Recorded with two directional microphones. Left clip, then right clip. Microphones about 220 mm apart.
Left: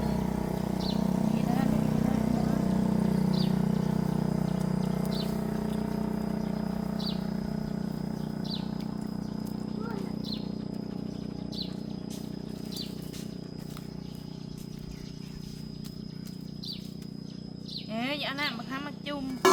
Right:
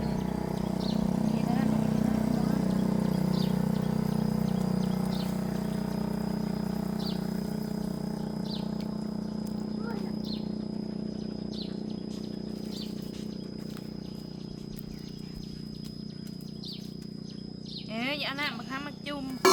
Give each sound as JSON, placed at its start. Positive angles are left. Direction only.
{"t": 0.0, "sound": "vehicle", "side_deg": 5}
{"t": 17.9, "sound": "music", "side_deg": -10}